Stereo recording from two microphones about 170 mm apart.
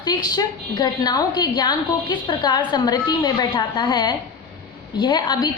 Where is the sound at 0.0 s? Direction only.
25° left (ahead or behind).